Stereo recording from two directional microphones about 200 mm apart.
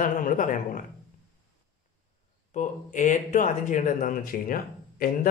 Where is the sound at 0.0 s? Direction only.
40° left (ahead or behind).